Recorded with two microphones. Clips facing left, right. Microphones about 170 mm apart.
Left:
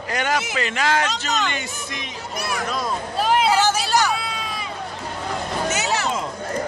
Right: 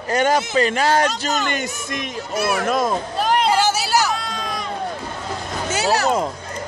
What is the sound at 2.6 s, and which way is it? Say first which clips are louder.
Speech: right 6 dB; 50° right (ahead or behind).